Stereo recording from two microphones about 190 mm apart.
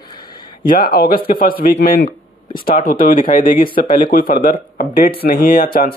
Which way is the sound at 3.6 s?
25° left (ahead or behind).